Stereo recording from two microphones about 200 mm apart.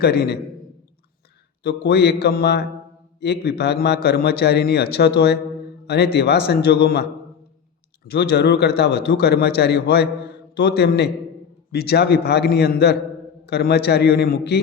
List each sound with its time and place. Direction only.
0.0 s a man's voice: 55° left (ahead or behind)
1.6 s a man's voice: 55° left (ahead or behind)